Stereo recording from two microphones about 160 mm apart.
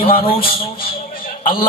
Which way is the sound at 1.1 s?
65° left (ahead or behind).